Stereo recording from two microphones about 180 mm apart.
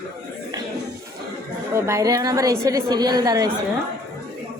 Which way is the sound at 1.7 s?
15° right (ahead or behind).